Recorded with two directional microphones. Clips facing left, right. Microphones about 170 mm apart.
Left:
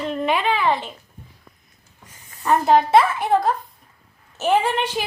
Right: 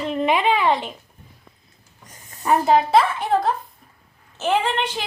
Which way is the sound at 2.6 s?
Centre (ahead or behind).